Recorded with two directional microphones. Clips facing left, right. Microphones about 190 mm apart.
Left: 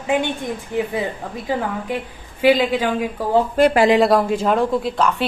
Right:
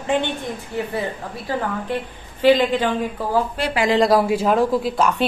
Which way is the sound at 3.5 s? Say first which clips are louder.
Left 7 dB; 45° left (ahead or behind).